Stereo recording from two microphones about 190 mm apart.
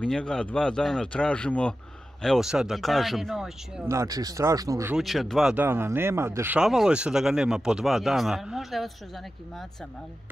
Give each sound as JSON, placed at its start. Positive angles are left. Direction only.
{"t": 0.0, "sound": "speech", "side_deg": 5}
{"t": 3.8, "sound": "speech", "side_deg": -15}
{"t": 4.9, "sound": "speech", "side_deg": 0}